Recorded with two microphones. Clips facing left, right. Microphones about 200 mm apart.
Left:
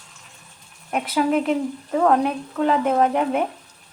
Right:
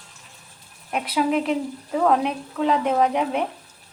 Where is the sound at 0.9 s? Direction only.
Centre (ahead or behind).